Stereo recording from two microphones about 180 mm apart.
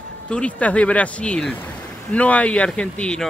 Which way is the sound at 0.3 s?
5° left (ahead or behind).